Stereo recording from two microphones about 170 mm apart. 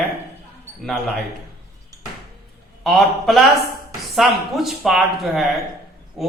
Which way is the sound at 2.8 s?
Centre (ahead or behind).